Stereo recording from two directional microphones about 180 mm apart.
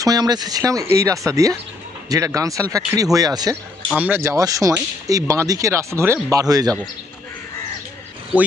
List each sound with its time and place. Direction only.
0.0 s speech: 20° right (ahead or behind)
3.9 s speech: 10° right (ahead or behind)